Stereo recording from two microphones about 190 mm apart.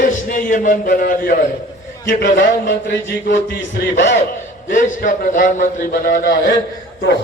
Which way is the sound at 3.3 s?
70° left (ahead or behind).